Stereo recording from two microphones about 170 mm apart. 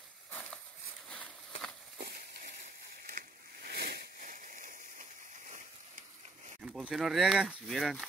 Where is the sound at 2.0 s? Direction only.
70° right (ahead or behind); by 5.6 s 50° right (ahead or behind).